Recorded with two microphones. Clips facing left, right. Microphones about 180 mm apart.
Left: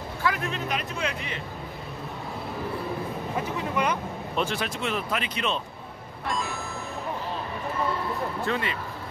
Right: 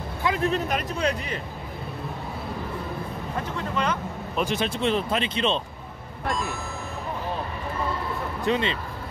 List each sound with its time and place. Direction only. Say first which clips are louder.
0.2 s a sound: right 3 dB; 25° right (ahead or behind)
0.5 s speech: right 5 dB; 40° right (ahead or behind)
3.3 s speech: even; 10° left (ahead or behind)
4.5 s speech: right 5 dB; 25° right (ahead or behind)
8.5 s speech: right 7 dB; 20° right (ahead or behind)